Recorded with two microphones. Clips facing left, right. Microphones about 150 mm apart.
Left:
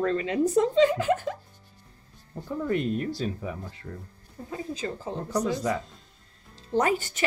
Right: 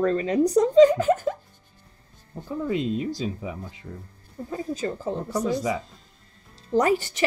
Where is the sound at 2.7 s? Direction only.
15° right (ahead or behind).